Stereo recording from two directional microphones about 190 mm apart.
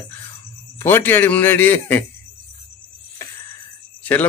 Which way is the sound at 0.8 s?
10° left (ahead or behind).